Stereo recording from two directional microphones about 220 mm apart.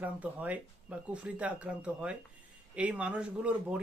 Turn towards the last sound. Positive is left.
turn(degrees=-5)  # may be behind; listen again after turning